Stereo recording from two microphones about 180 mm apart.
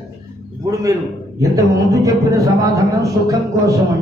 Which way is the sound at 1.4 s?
20° right (ahead or behind).